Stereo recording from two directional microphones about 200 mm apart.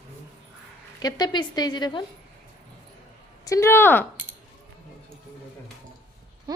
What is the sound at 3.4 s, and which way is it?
Speech, 15° left (ahead or behind).